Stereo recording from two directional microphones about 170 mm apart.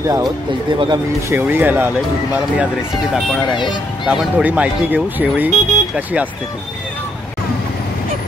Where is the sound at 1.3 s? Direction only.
10° right (ahead or behind).